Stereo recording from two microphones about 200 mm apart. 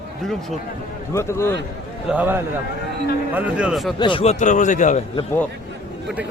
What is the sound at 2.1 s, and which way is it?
A man's voice, 10° right (ahead or behind).